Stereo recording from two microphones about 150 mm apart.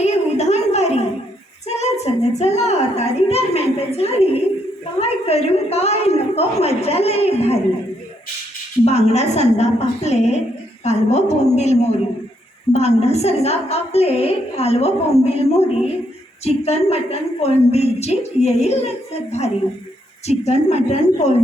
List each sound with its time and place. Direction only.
0.0 s a sound: 50° left (ahead or behind)
2.3 s a woman's voice: 45° left (ahead or behind)
8.8 s a woman's voice: 45° left (ahead or behind)